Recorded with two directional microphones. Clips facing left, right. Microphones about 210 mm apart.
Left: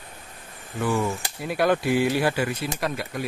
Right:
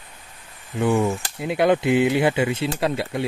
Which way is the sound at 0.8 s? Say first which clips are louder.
Right 5 dB; 20° right (ahead or behind).